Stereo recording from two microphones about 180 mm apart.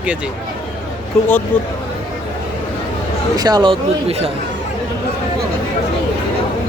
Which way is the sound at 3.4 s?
20° right (ahead or behind).